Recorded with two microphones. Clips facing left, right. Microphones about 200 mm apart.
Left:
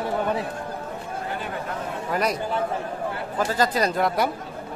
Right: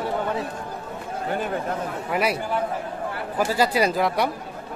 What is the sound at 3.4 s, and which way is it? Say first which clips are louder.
Speech: right 2 dB; 10° right (ahead or behind).